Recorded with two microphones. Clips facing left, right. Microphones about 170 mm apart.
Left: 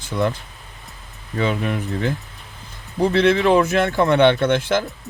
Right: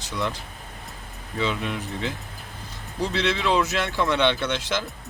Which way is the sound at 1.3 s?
55° left (ahead or behind).